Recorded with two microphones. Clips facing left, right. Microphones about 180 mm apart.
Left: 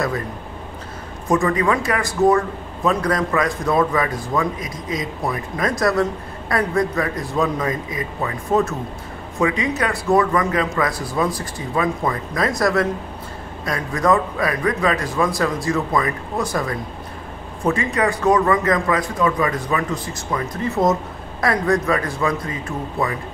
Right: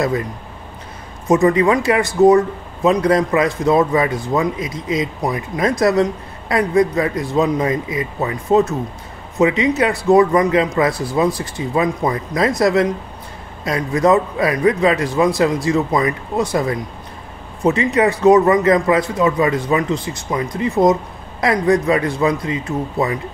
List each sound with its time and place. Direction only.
1.3 s a man's voice: 20° right (ahead or behind)
17.6 s a man's voice: 20° right (ahead or behind)